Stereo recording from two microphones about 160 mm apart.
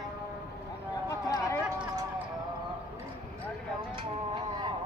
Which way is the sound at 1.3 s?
20° left (ahead or behind).